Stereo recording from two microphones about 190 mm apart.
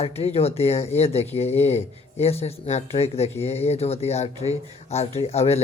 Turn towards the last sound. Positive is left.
turn(degrees=35)  # may be behind; listen again after turning